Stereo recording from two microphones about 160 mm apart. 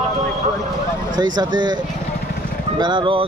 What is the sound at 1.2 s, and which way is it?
Speech, 25° right (ahead or behind).